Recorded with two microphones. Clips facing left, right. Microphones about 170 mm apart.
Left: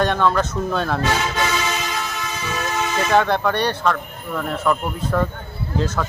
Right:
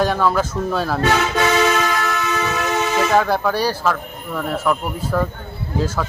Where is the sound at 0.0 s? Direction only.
5° right (ahead or behind).